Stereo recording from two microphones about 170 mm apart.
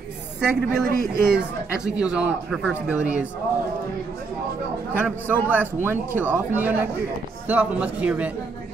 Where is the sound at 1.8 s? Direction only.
5° right (ahead or behind).